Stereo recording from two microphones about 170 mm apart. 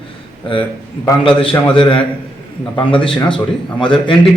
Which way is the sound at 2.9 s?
30° left (ahead or behind).